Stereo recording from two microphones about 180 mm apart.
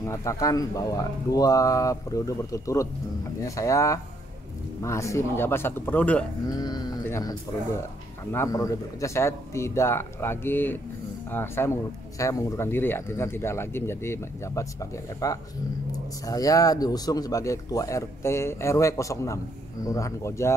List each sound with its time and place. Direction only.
0.0 s speech: 15° left (ahead or behind)
6.4 s speech: 20° left (ahead or behind)